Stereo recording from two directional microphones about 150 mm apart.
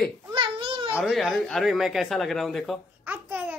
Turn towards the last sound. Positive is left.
turn(degrees=-10)  # may be behind; listen again after turning